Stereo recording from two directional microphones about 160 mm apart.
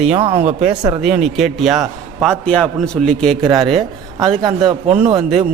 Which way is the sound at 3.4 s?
25° right (ahead or behind).